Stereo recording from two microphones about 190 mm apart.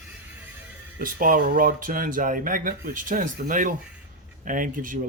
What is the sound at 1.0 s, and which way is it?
Speech, 45° right (ahead or behind).